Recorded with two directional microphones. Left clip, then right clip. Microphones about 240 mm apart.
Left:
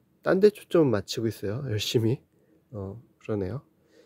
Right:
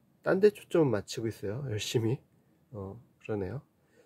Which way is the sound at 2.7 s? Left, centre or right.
Centre.